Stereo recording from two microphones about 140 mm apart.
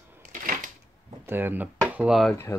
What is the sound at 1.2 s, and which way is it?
Speech, 15° right (ahead or behind).